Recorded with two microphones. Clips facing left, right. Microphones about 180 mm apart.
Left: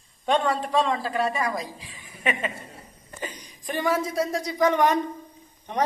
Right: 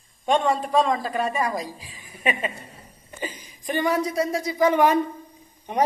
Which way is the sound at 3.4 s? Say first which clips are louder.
Right 4 dB; centre (ahead or behind).